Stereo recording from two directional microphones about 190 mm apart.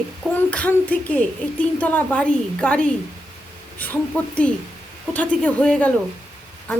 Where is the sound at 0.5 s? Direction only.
10° left (ahead or behind).